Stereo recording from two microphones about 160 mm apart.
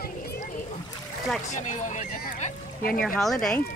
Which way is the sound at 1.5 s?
50° left (ahead or behind).